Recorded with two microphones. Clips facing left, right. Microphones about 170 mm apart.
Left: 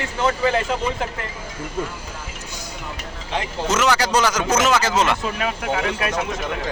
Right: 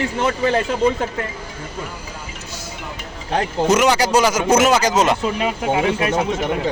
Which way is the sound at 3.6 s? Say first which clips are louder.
Right 3 dB; 15° right (ahead or behind).